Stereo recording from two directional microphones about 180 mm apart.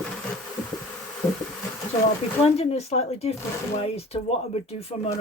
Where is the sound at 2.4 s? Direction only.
35° left (ahead or behind).